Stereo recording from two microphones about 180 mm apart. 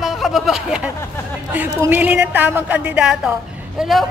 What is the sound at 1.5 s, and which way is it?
A woman's voice, 10° right (ahead or behind).